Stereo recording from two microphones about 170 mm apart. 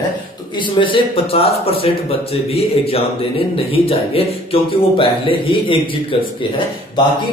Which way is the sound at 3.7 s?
35° left (ahead or behind).